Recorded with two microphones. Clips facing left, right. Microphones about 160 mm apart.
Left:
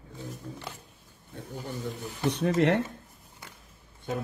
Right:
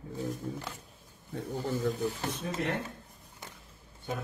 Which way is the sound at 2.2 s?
75° left (ahead or behind).